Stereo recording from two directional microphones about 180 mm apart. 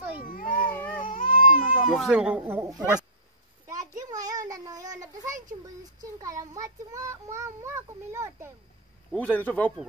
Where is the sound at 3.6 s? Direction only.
20° right (ahead or behind).